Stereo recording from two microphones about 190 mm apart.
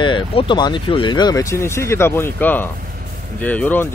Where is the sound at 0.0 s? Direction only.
25° left (ahead or behind).